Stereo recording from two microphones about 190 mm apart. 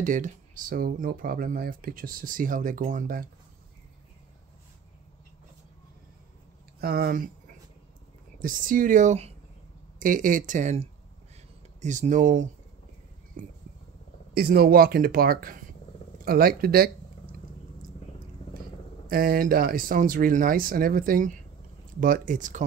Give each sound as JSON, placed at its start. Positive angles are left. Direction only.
{"t": 0.0, "sound": "speech", "side_deg": -45}
{"t": 6.8, "sound": "speech", "side_deg": -55}
{"t": 8.4, "sound": "speech", "side_deg": -45}
{"t": 13.4, "sound": "a sound", "side_deg": -45}
{"t": 14.3, "sound": "speech", "side_deg": -55}
{"t": 19.0, "sound": "speech", "side_deg": -50}